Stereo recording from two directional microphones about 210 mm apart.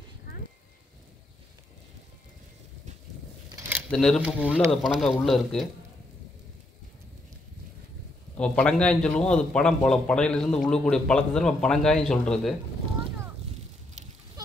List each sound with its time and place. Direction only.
3.4 s a sound: 15° right (ahead or behind)
3.9 s a man's voice: centre (ahead or behind)
8.4 s a man's voice: 5° left (ahead or behind)